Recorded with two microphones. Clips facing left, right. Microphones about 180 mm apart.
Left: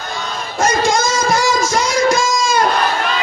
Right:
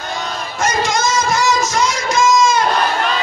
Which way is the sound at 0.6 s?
35° left (ahead or behind).